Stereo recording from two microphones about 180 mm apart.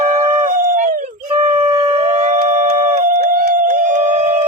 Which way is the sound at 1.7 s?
30° right (ahead or behind).